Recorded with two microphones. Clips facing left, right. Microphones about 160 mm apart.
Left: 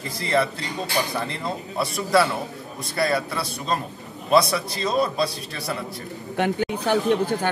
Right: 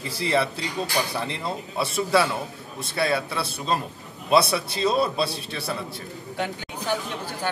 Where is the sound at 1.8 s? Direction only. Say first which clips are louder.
Left 1 dB; centre (ahead or behind).